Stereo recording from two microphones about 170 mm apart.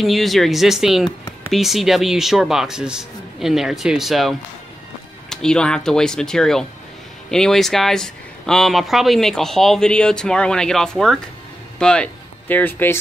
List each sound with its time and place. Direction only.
0.0 s speech: centre (ahead or behind)
1.0 s speech: 20° left (ahead or behind)
1.5 s speech: centre (ahead or behind)